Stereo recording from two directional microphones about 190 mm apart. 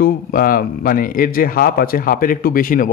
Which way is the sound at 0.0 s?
50° left (ahead or behind).